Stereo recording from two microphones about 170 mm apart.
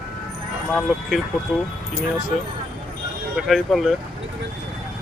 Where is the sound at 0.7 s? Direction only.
5° left (ahead or behind).